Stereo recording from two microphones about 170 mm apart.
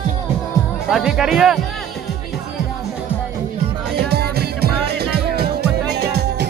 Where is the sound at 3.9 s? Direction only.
70° right (ahead or behind).